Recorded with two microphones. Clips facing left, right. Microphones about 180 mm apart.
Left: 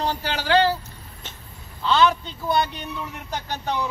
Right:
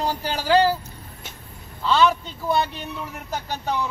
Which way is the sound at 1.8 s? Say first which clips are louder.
Even; 5° right (ahead or behind).